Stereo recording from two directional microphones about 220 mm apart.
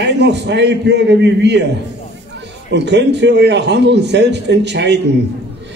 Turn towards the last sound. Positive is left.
turn(degrees=-50)  # may be behind; listen again after turning